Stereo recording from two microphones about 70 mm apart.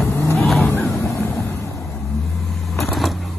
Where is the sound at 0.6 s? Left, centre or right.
Left.